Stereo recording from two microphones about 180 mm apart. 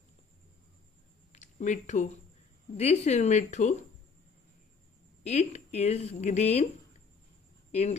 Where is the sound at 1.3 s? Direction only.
40° left (ahead or behind).